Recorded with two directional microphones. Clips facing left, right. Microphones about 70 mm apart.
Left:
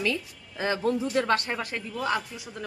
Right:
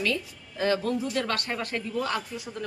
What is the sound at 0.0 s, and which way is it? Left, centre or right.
Speech, centre.